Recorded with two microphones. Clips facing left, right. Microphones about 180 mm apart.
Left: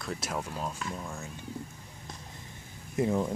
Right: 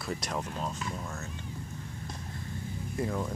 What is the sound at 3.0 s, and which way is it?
Speech, 20° left (ahead or behind).